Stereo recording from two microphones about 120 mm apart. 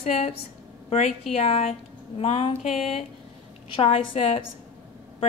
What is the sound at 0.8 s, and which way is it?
A woman's voice, 65° left (ahead or behind).